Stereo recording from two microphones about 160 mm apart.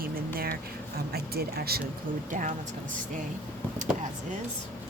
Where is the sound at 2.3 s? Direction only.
55° right (ahead or behind).